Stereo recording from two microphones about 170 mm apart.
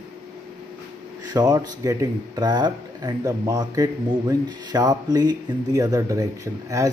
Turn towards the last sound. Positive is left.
turn(degrees=-20)  # may be behind; listen again after turning